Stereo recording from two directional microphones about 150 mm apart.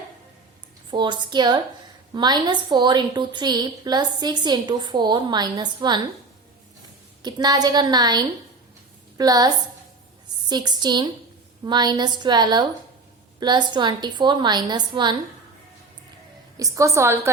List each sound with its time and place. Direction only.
0.9 s a woman's voice: 30° right (ahead or behind)
7.2 s a woman's voice: 25° right (ahead or behind)
10.5 s a woman's voice: 30° right (ahead or behind)
16.6 s a woman's voice: 20° right (ahead or behind)